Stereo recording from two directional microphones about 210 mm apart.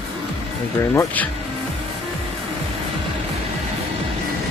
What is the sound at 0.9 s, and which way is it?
Speech, 10° left (ahead or behind).